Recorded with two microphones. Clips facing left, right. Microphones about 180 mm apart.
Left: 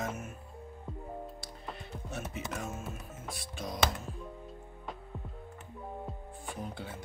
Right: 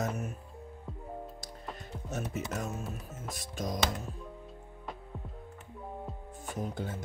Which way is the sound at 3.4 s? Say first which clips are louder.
Right 5 dB; 45° right (ahead or behind).